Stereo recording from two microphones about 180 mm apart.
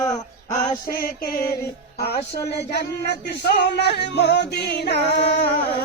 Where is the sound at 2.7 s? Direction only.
65° left (ahead or behind).